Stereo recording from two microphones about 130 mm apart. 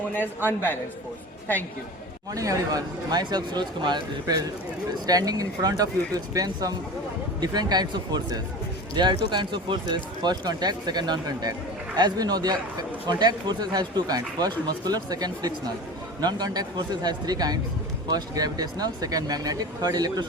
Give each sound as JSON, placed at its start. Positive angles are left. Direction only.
{"t": 0.1, "sound": "a man's voice", "side_deg": 15}
{"t": 2.3, "sound": "speech", "side_deg": -25}